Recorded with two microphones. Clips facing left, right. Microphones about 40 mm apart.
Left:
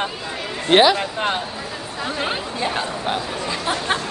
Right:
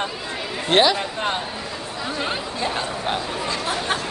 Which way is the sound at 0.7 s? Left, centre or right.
Centre.